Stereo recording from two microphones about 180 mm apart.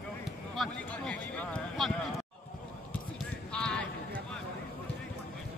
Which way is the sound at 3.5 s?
5° left (ahead or behind).